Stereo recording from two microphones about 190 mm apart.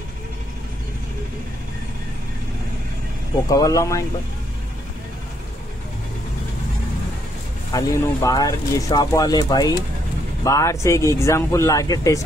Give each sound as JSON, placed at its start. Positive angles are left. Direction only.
{"t": 3.4, "sound": "speech", "side_deg": 20}
{"t": 7.7, "sound": "speech", "side_deg": 15}